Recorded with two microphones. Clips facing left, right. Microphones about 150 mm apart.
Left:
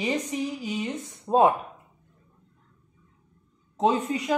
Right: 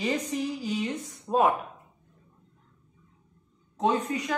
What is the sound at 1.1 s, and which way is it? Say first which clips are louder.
Speech: left 4 dB; 25° left (ahead or behind).